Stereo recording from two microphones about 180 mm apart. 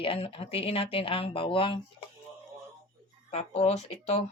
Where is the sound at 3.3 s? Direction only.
35° left (ahead or behind).